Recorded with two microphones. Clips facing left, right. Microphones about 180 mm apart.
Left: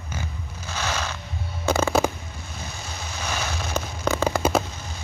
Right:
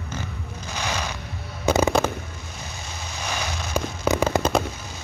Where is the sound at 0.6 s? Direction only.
15° right (ahead or behind).